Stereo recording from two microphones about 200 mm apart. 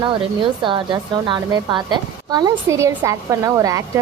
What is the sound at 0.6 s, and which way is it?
A woman's voice, 25° right (ahead or behind).